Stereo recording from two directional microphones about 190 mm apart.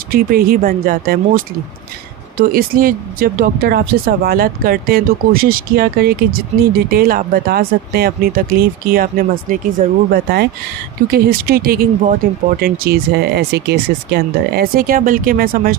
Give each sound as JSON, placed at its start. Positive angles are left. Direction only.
{"t": 0.1, "sound": "speech", "side_deg": -50}